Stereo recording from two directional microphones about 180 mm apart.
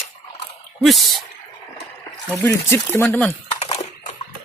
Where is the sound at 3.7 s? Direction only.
40° left (ahead or behind).